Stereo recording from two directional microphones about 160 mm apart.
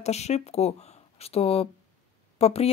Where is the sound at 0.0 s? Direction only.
45° left (ahead or behind).